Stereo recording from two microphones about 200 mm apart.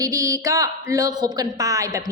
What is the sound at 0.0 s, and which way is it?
A woman's voice, 15° right (ahead or behind).